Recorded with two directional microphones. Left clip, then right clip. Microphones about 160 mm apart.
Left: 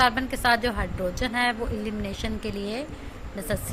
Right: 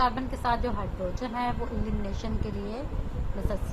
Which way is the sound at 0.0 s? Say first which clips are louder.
Left 5 dB; 20° left (ahead or behind).